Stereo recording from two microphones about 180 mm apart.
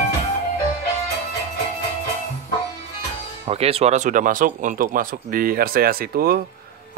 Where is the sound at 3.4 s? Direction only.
35° right (ahead or behind).